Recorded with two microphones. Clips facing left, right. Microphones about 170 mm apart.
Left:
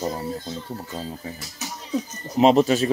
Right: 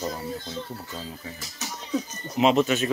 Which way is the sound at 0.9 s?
35° left (ahead or behind).